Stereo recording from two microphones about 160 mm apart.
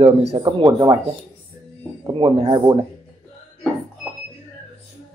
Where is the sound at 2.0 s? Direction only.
30° right (ahead or behind).